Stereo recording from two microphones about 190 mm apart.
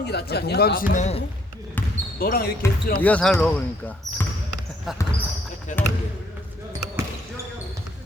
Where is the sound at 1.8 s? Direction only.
10° left (ahead or behind).